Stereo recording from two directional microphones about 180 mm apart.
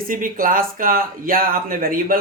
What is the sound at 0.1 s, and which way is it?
Speech, 50° right (ahead or behind).